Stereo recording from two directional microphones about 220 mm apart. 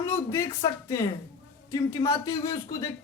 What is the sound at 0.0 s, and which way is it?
A man's voice, 10° left (ahead or behind).